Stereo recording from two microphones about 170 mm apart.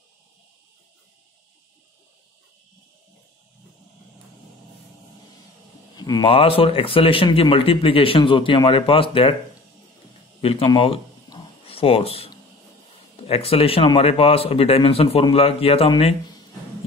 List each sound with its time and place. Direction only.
5.9 s speech: 25° left (ahead or behind)
10.4 s a sound: 30° left (ahead or behind)
13.3 s speech: 35° left (ahead or behind)